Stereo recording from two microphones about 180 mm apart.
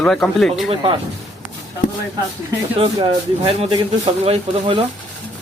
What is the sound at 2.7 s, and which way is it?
Speech, 30° right (ahead or behind).